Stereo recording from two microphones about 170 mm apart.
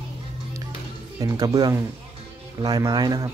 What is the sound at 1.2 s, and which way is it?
Speech, 20° right (ahead or behind).